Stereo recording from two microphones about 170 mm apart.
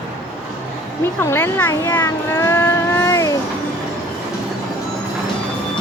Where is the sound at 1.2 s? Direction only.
15° left (ahead or behind).